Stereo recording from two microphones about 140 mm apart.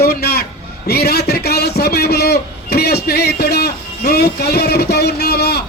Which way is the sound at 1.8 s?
90° left.